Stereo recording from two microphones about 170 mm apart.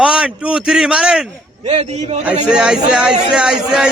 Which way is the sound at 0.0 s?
5° right (ahead or behind).